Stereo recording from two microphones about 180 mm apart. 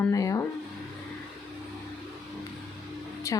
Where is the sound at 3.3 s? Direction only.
15° left (ahead or behind).